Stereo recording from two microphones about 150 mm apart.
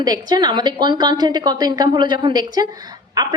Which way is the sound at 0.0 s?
25° right (ahead or behind).